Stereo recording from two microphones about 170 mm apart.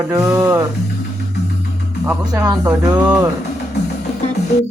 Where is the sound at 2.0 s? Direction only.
20° right (ahead or behind).